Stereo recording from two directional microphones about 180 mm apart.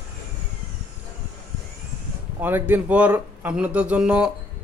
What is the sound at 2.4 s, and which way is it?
Speech, 10° right (ahead or behind).